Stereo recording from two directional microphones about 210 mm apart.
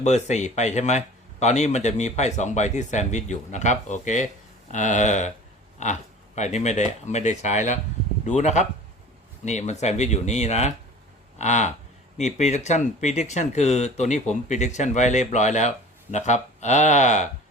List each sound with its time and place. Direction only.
0.0 s speech: 35° left (ahead or behind)